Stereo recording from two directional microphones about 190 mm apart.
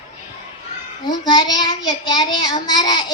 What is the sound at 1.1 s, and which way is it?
Speech, 20° left (ahead or behind).